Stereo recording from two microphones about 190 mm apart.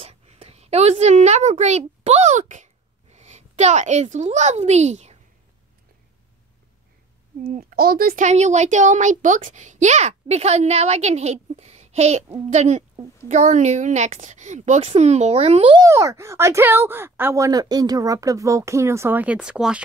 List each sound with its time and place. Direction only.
0.0 s a woman's voice: 35° right (ahead or behind)
7.4 s speech: 50° right (ahead or behind); by 15.8 s 30° right (ahead or behind)
15.8 s speech: 15° right (ahead or behind)